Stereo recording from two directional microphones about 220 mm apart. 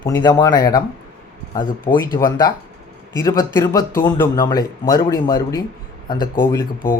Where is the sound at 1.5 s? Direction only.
40° left (ahead or behind).